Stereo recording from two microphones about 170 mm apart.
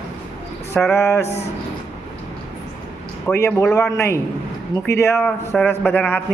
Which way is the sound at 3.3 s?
15° left (ahead or behind).